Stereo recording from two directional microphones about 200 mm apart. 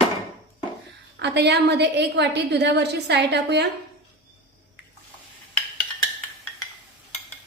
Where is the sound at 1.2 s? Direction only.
55° right (ahead or behind).